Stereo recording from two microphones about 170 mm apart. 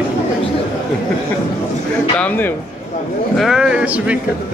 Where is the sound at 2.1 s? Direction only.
10° left (ahead or behind).